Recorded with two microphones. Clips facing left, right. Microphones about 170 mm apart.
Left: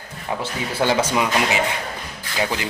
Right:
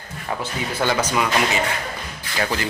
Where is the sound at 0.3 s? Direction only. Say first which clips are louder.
Left 2 dB; 30° left (ahead or behind).